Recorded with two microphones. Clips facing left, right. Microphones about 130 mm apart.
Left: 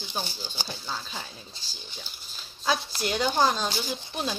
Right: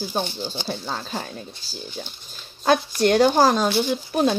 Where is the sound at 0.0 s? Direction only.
45° right (ahead or behind).